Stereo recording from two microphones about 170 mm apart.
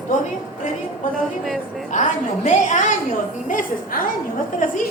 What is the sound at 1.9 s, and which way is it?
A man's voice, 45° left (ahead or behind).